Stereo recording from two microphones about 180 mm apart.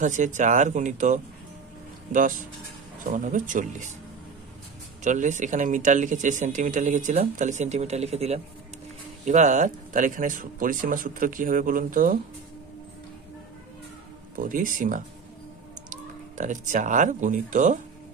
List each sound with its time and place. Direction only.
0.0 s speech: 45° right (ahead or behind)
5.0 s speech: 40° right (ahead or behind)
14.3 s speech: 50° right (ahead or behind)